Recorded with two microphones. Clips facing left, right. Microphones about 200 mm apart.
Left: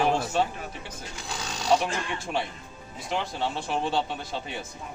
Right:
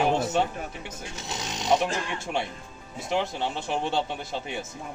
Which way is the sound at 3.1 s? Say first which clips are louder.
Right 2 dB; 20° right (ahead or behind).